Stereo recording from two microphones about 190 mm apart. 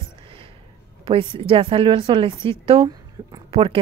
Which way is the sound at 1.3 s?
30° right (ahead or behind).